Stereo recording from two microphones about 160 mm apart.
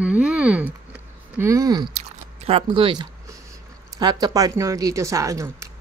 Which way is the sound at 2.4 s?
40° right (ahead or behind).